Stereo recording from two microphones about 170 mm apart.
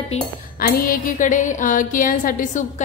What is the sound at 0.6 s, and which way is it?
A woman's voice, 60° left (ahead or behind).